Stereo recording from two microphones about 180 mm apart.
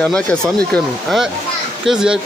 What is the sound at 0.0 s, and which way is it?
Speech, 5° left (ahead or behind).